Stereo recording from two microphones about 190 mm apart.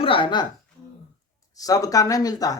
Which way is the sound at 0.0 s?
25° left (ahead or behind).